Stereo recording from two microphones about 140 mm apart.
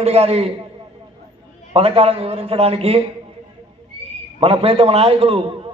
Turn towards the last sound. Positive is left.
turn(degrees=-40)  # may be behind; listen again after turning